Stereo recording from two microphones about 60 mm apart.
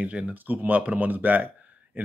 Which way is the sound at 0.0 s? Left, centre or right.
Right.